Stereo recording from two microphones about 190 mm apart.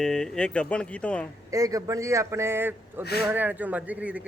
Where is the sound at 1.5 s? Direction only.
20° right (ahead or behind).